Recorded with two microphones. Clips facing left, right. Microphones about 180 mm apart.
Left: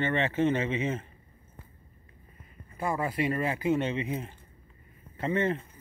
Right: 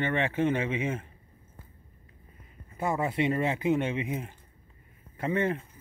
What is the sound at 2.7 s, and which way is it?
Speech, 20° right (ahead or behind).